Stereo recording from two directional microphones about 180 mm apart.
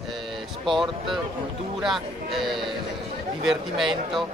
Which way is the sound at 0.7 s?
Centre (ahead or behind).